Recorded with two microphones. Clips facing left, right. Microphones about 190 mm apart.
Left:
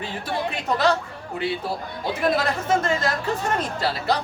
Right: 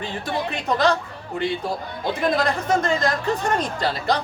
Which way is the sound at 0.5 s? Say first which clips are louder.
Right 1 dB; 5° left (ahead or behind).